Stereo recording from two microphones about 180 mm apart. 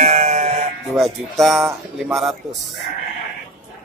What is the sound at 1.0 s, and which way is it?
Speech, centre (ahead or behind).